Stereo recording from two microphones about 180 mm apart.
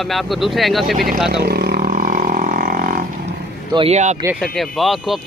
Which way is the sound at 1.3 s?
65° right (ahead or behind).